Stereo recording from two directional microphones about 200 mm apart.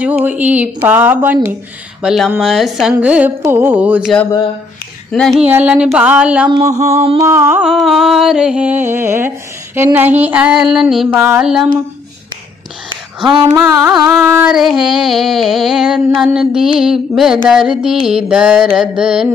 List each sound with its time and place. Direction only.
0.0 s music: 10° right (ahead or behind)
5.1 s music: centre (ahead or behind)
6.6 s mantra: 35° right (ahead or behind)
7.2 s music: 15° right (ahead or behind)
13.5 s music: 10° right (ahead or behind)